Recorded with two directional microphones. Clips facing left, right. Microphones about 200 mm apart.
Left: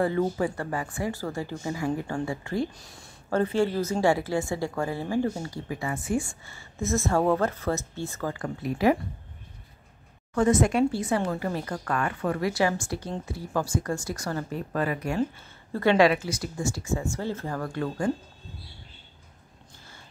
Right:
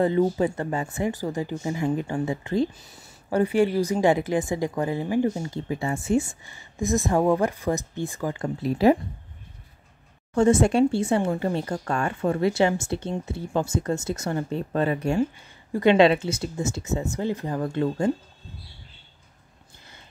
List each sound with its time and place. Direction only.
0.0 s speech: 20° right (ahead or behind)
2.7 s speech: 5° right (ahead or behind)
3.3 s a woman's voice: 15° right (ahead or behind)
8.6 s speech: 30° right (ahead or behind)
10.3 s speech: 25° right (ahead or behind)